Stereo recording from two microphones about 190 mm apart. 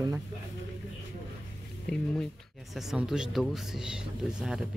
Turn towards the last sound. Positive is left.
turn(degrees=-5)  # may be behind; listen again after turning